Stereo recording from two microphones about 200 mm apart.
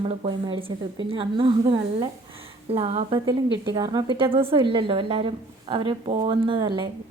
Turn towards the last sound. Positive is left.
turn(degrees=-25)  # may be behind; listen again after turning